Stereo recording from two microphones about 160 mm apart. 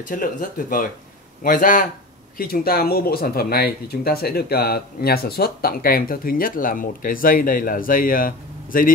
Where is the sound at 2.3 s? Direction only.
70° left (ahead or behind).